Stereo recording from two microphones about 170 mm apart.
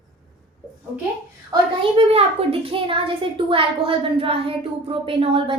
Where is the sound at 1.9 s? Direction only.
35° right (ahead or behind).